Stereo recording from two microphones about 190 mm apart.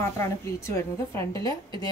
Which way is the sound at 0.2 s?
15° left (ahead or behind).